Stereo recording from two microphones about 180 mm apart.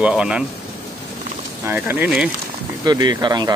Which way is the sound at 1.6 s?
10° right (ahead or behind).